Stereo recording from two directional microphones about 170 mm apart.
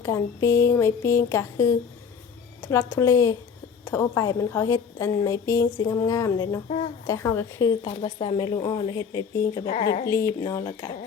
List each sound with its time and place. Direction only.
0.0 s a woman's voice: 15° left (ahead or behind)
9.8 s speech: 60° left (ahead or behind)
10.1 s a woman's voice: 15° left (ahead or behind)